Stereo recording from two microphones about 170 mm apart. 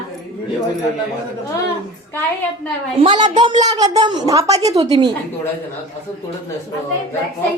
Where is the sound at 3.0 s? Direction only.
25° right (ahead or behind).